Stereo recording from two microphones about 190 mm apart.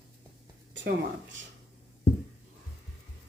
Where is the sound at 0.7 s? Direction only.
75° right (ahead or behind).